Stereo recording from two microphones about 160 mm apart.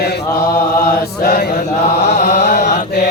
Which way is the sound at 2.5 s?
50° left (ahead or behind).